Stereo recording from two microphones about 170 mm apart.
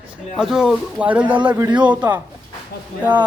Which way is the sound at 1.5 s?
20° right (ahead or behind).